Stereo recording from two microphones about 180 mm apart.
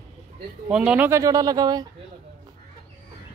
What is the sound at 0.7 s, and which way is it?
Speech, 5° right (ahead or behind).